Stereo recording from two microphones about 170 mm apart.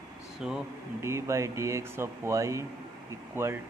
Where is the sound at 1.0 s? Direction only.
15° right (ahead or behind).